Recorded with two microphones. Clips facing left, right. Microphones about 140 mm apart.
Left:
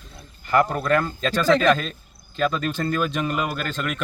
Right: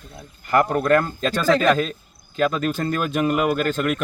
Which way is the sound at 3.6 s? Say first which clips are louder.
Right 6 dB; 45° right (ahead or behind).